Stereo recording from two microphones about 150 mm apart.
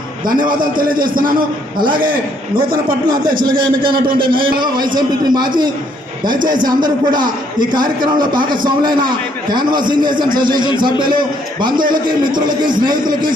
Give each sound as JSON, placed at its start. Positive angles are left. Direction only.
{"t": 0.4, "sound": "a man's voice", "side_deg": -65}
{"t": 3.2, "sound": "a man's voice", "side_deg": -70}
{"t": 4.9, "sound": "a man's voice", "side_deg": -30}